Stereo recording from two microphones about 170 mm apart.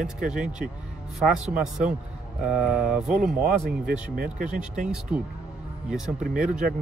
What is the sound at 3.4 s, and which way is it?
Speech, 55° right (ahead or behind).